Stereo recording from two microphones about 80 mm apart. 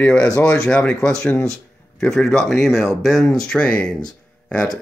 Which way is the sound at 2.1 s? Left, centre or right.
Centre.